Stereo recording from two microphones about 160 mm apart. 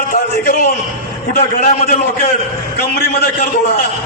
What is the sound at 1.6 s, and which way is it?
Speech, 45° left (ahead or behind).